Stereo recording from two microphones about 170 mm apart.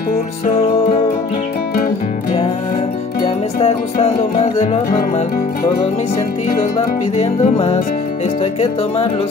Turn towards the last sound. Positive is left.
turn(degrees=40)  # may be behind; listen again after turning